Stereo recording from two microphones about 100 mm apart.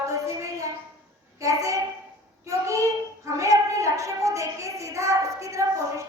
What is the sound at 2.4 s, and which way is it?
Child singing, 30° right (ahead or behind).